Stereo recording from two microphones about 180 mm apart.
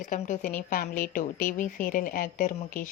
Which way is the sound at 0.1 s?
45° left (ahead or behind).